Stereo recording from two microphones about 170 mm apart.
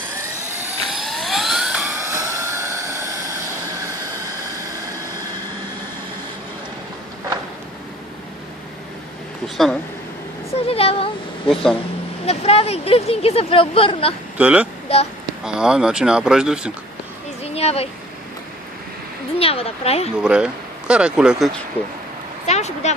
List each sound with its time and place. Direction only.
0.5 s vehicle: 5° right (ahead or behind)
2.0 s vehicle: 15° right (ahead or behind)
10.7 s a sound: 35° left (ahead or behind)
11.4 s speech: 5° left (ahead or behind)
12.2 s speech: 35° left (ahead or behind)
14.3 s speech: 10° right (ahead or behind)
14.9 s speech: 35° left (ahead or behind)
15.4 s speech: 5° right (ahead or behind)
17.4 s a sound: 35° left (ahead or behind)
19.4 s speech: 35° left (ahead or behind)
20.1 s speech: 5° right (ahead or behind)
22.4 s vehicle: 40° left (ahead or behind)